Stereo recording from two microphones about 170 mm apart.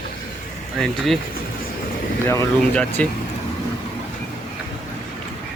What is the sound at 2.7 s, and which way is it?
Speech, 5° left (ahead or behind).